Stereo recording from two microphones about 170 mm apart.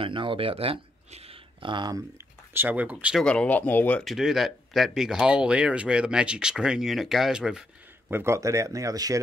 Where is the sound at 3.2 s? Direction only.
5° left (ahead or behind).